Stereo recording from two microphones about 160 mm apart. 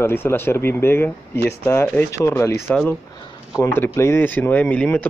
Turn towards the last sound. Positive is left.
turn(degrees=10)  # may be behind; listen again after turning